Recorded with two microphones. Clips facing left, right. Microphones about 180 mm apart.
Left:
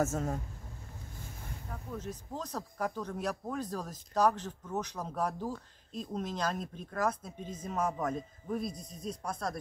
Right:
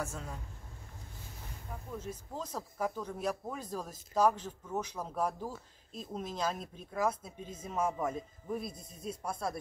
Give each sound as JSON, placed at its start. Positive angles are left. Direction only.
{"t": 0.0, "sound": "speech", "side_deg": 45}
{"t": 2.3, "sound": "speech", "side_deg": -5}